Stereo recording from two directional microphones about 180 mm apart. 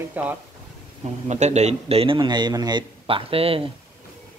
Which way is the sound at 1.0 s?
40° right (ahead or behind).